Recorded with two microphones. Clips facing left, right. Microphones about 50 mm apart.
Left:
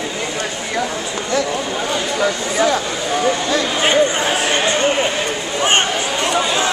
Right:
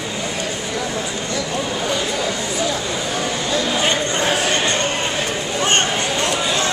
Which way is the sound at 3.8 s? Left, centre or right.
Centre.